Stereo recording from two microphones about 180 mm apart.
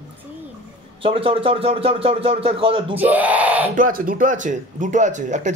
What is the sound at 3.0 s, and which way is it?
Speech, 10° right (ahead or behind).